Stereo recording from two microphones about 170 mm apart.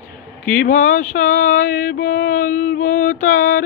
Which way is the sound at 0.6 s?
50° left (ahead or behind).